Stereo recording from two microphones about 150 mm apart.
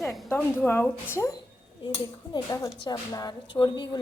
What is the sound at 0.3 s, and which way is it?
A woman's voice, 10° left (ahead or behind).